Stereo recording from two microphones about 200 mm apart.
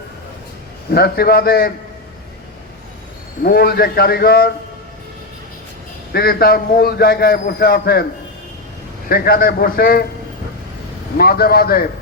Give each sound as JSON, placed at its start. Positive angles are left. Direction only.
{"t": 0.9, "sound": "a man's voice", "side_deg": 50}
{"t": 3.4, "sound": "a man's voice", "side_deg": 50}
{"t": 6.1, "sound": "a man's voice", "side_deg": 50}
{"t": 9.0, "sound": "a man's voice", "side_deg": 50}
{"t": 11.2, "sound": "a man's voice", "side_deg": 50}